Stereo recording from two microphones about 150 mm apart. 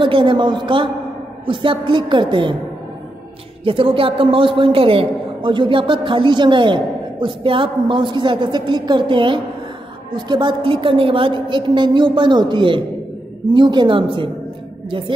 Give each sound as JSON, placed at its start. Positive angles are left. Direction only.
{"t": 0.0, "sound": "a man's voice", "side_deg": -35}
{"t": 3.6, "sound": "a man's voice", "side_deg": -35}